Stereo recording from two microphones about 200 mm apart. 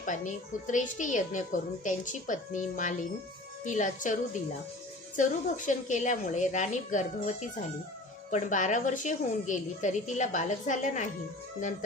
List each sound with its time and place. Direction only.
0.0 s a child's voice: 40° left (ahead or behind)